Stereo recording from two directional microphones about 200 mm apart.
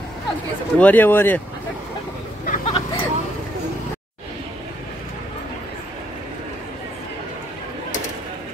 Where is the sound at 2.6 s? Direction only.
25° left (ahead or behind).